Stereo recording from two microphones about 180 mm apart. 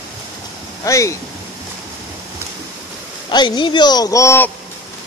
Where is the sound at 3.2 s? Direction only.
25° left (ahead or behind).